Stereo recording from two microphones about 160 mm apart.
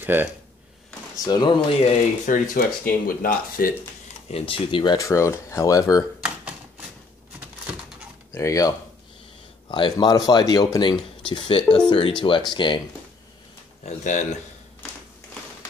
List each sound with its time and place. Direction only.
0.0 s speech: 10° right (ahead or behind)
1.1 s speech: 25° left (ahead or behind)
2.2 s speech: 60° left (ahead or behind)
4.3 s speech: 35° left (ahead or behind)
6.2 s a sound: 10° right (ahead or behind)
8.3 s speech: 20° left (ahead or behind)
9.7 s speech: 30° left (ahead or behind)
13.8 s speech: 45° left (ahead or behind)